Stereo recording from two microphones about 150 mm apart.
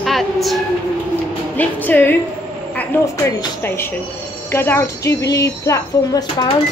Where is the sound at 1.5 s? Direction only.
10° left (ahead or behind); by 6.5 s 30° left (ahead or behind).